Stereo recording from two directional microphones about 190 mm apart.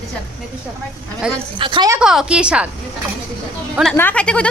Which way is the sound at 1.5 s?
25° right (ahead or behind).